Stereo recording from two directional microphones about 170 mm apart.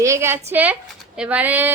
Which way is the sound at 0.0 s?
15° right (ahead or behind).